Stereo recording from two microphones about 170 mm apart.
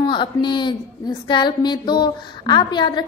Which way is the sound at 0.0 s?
30° left (ahead or behind).